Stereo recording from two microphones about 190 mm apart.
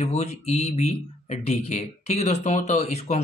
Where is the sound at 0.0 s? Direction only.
35° left (ahead or behind).